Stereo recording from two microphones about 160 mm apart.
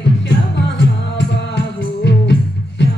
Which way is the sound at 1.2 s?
90° left.